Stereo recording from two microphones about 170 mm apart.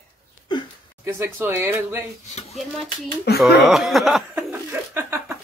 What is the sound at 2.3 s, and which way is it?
Speech, 40° left (ahead or behind).